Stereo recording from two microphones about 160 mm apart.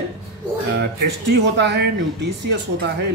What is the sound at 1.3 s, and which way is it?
A woman's voice, 90° right.